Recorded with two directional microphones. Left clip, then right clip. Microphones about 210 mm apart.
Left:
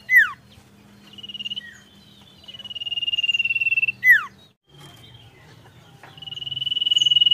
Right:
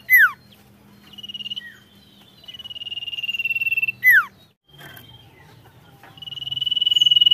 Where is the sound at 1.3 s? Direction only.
30° right (ahead or behind).